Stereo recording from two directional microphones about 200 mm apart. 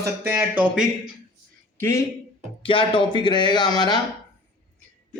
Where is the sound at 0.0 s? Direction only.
10° right (ahead or behind).